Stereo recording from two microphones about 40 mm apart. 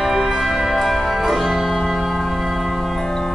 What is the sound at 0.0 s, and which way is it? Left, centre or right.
Music, centre.